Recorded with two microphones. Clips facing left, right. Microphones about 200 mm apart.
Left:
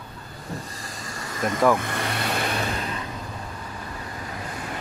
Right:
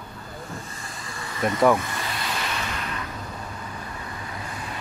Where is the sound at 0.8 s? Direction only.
40° left (ahead or behind).